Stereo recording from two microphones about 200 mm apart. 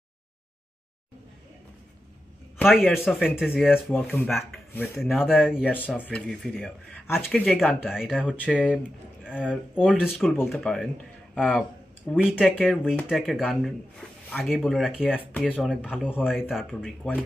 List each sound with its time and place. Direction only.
2.6 s speech: 5° left (ahead or behind)
8.5 s speech: 5° left (ahead or behind)
9.8 s speech: 5° right (ahead or behind)
15.0 s speech: 10° left (ahead or behind)